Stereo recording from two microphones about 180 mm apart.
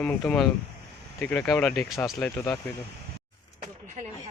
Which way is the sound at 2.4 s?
15° left (ahead or behind).